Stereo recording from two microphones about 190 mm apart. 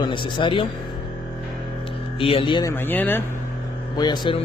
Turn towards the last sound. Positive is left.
turn(degrees=25)  # may be behind; listen again after turning